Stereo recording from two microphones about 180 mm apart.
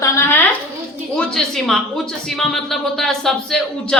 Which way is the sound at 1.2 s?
5° left (ahead or behind).